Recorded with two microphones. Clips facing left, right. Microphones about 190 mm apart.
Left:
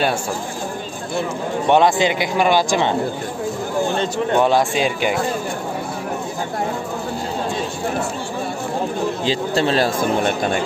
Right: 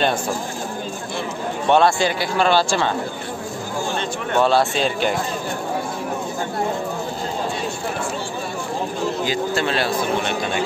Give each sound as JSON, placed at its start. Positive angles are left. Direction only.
{"t": 1.7, "sound": "a man's voice", "side_deg": 15}
{"t": 4.4, "sound": "a man's voice", "side_deg": 15}
{"t": 9.2, "sound": "speech", "side_deg": 30}